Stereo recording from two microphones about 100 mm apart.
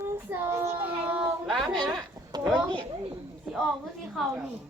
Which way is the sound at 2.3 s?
45° right (ahead or behind).